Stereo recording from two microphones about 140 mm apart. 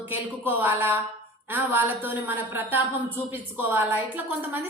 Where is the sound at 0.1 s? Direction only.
15° right (ahead or behind).